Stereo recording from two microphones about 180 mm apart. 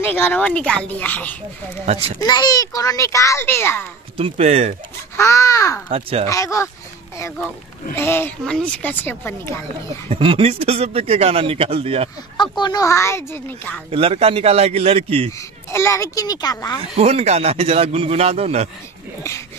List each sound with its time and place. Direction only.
0.0 s a child's voice: 10° left (ahead or behind)
1.9 s a man's voice: 30° right (ahead or behind)
2.2 s a child's voice: 20° left (ahead or behind)
4.2 s a man's voice: 35° right (ahead or behind)
5.1 s a child's voice: 15° left (ahead or behind)
5.9 s a man's voice: 35° right (ahead or behind)
6.2 s a child's voice: 15° left (ahead or behind)
7.9 s a child's voice: 10° left (ahead or behind)
10.0 s a man's voice: 30° right (ahead or behind)
12.4 s a child's voice: 25° left (ahead or behind); by 13.8 s 10° left (ahead or behind)
13.8 s a man's voice: 35° right (ahead or behind)
15.3 s a woman's voice: 15° left (ahead or behind)
16.9 s a man's voice: 35° right (ahead or behind)